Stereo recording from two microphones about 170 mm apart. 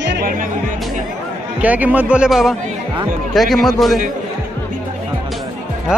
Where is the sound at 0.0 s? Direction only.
90° right.